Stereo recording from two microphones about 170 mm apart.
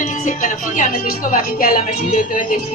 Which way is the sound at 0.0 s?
45° left (ahead or behind).